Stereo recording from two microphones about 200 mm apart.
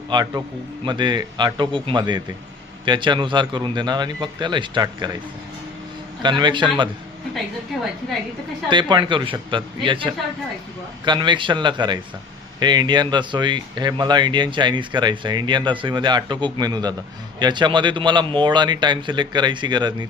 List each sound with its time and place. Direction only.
0.1 s speech: 20° right (ahead or behind)
6.2 s speech: 25° right (ahead or behind)
7.7 s a woman's voice: centre (ahead or behind)
8.7 s speech: 25° right (ahead or behind)